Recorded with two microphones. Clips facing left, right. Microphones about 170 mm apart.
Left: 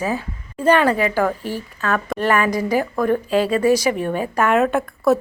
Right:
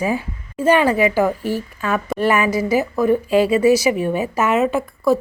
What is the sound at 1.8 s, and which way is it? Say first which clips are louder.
A woman's voice: right 1 dB; 10° right (ahead or behind).